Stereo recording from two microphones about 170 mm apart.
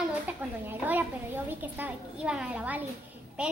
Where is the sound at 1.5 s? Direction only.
10° right (ahead or behind).